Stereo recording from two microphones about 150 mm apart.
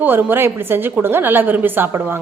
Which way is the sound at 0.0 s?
15° right (ahead or behind).